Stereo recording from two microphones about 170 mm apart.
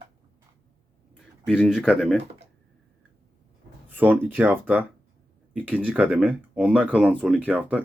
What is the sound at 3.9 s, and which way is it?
Speech, 10° right (ahead or behind).